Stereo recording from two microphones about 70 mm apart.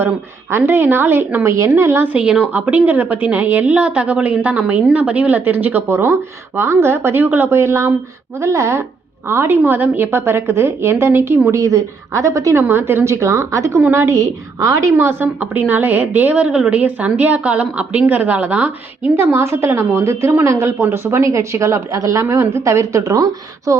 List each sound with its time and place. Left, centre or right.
0.5 s a woman's voice: right
1.5 s speech: right
2.1 s speech: centre
2.5 s a woman's voice: right
7.6 s a woman's voice: right
11.5 s speech: right
12.6 s a woman's voice: right
15.4 s a woman's voice: right
19.1 s a woman's voice: right